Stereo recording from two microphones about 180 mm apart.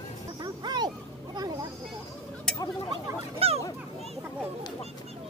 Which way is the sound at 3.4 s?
35° right (ahead or behind).